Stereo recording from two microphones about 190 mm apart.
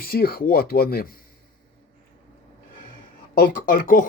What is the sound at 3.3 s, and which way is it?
Speech, 50° left (ahead or behind).